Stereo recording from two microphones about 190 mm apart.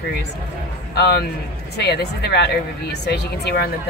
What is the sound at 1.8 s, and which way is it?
Speech, 60° left (ahead or behind).